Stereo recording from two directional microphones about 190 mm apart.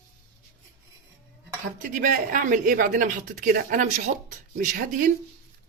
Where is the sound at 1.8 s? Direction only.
45° right (ahead or behind).